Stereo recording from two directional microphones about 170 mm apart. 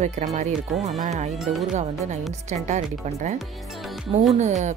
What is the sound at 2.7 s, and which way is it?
Speech, 45° right (ahead or behind).